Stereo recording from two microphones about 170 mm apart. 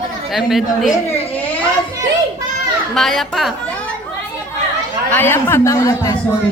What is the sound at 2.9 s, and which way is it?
Speech, centre (ahead or behind).